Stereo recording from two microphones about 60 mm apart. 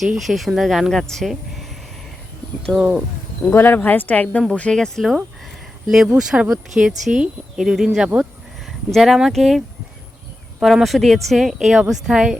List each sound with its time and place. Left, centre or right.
0.1 s speech: centre
2.7 s speech: centre
3.5 s speech: left
4.8 s speech: centre
5.9 s speech: centre
10.8 s speech: centre